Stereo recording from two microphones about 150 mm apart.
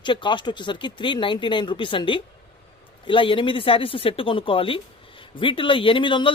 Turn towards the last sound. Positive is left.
turn(degrees=35)  # may be behind; listen again after turning